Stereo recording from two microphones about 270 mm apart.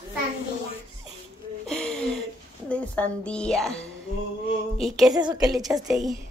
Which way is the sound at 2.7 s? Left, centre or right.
Centre.